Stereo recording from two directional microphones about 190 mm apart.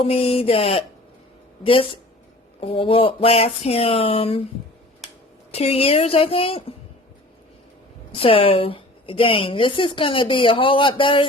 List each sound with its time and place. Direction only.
0.0 s speech: 30° left (ahead or behind)
5.5 s speech: 30° left (ahead or behind)
8.1 s speech: 30° left (ahead or behind)